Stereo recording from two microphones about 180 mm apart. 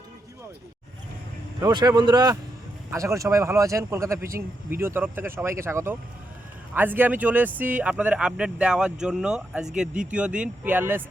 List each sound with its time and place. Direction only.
1.6 s speech: 20° right (ahead or behind)